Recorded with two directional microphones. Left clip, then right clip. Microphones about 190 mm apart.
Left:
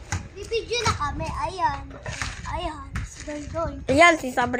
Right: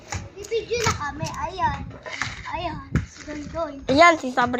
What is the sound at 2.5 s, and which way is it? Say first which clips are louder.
Speech: even; 20° left (ahead or behind).